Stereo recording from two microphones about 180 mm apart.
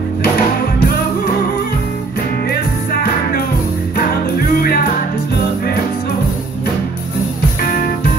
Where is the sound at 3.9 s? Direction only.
55° left (ahead or behind).